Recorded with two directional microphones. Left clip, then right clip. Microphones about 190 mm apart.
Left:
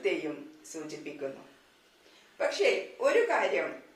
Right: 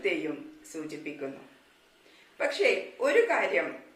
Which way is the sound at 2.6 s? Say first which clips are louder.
Right 1 dB; 15° right (ahead or behind).